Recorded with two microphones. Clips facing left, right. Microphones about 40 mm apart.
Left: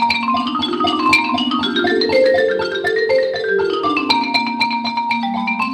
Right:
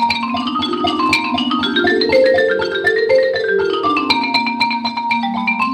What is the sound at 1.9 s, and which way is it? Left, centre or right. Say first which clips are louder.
Music: right 1 dB; right.